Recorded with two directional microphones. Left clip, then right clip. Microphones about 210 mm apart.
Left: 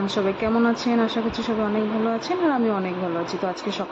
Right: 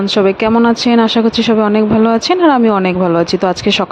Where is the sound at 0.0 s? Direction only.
45° right (ahead or behind).